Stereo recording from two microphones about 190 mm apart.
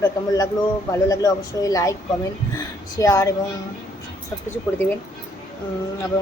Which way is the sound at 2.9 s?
20° left (ahead or behind).